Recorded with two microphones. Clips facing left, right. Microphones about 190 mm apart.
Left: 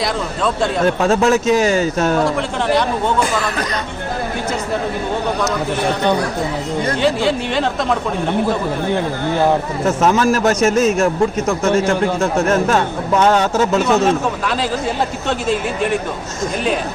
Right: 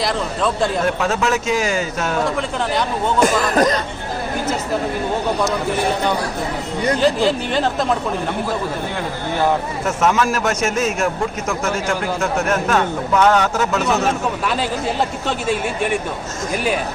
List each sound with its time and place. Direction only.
0.0 s speech: centre (ahead or behind)
0.9 s a man's voice: 40° left (ahead or behind)
3.2 s speech: 45° right (ahead or behind)
7.0 s speech: centre (ahead or behind)
9.8 s a man's voice: 35° left (ahead or behind)